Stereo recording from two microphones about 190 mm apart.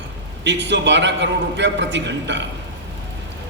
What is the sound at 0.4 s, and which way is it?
A man's voice, 70° right (ahead or behind).